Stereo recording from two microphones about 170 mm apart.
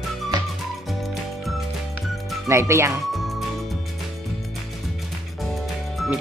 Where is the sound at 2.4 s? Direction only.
15° right (ahead or behind).